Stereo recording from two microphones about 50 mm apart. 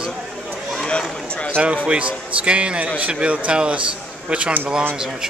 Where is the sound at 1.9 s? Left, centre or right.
Right.